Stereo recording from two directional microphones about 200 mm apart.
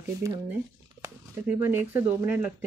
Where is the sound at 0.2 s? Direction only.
15° right (ahead or behind).